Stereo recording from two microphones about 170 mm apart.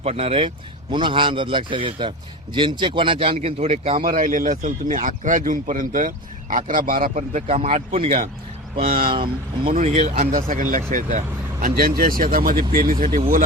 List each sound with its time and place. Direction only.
0.0 s a man's voice: 35° right (ahead or behind)
4.0 s speech: 50° right (ahead or behind)
10.2 s speech: 50° right (ahead or behind)
11.6 s speech: 60° right (ahead or behind)